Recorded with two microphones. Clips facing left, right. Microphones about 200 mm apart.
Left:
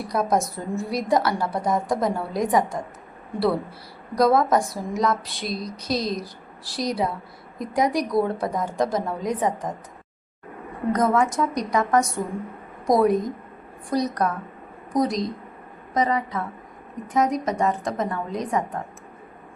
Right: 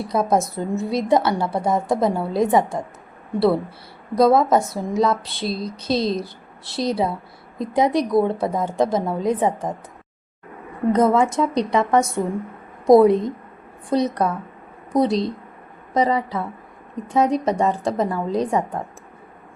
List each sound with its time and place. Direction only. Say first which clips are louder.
0.0 s speech: right 3 dB; 25° right (ahead or behind)
4.1 s speech: right 3 dB; 25° right (ahead or behind)
10.9 s a woman's voice: right 4 dB; 25° right (ahead or behind)